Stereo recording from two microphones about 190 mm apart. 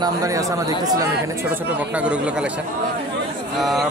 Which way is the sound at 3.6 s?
Centre (ahead or behind).